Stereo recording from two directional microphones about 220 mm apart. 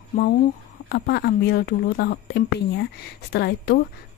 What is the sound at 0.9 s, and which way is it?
Speech, 45° left (ahead or behind).